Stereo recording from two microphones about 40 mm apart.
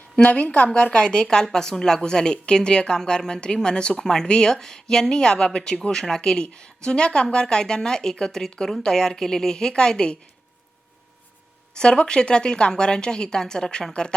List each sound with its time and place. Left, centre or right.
0.3 s a woman's voice: left
11.7 s a woman's voice: left